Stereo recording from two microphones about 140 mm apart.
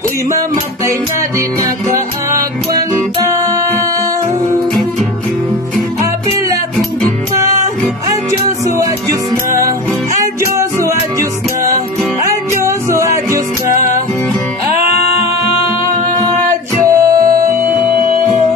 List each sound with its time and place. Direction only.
10.1 s music: 20° right (ahead or behind)
16.9 s music: 25° right (ahead or behind)